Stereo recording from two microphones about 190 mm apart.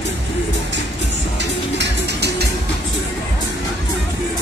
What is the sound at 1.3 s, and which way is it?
Music, 65° right (ahead or behind).